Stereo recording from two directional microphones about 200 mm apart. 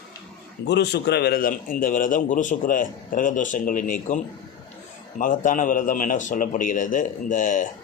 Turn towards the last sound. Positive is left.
turn(degrees=40)  # may be behind; listen again after turning